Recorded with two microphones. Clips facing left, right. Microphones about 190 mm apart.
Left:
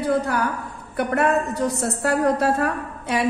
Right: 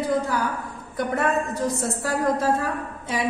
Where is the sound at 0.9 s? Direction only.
65° left (ahead or behind).